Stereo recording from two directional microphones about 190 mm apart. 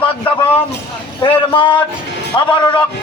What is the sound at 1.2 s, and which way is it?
A man's voice, 25° left (ahead or behind).